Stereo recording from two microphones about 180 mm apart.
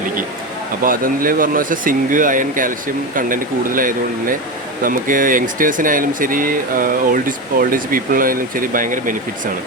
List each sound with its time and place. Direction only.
0.9 s speech: 50° right (ahead or behind)